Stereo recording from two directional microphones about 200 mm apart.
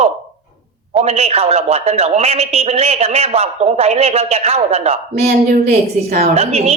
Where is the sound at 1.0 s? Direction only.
30° right (ahead or behind).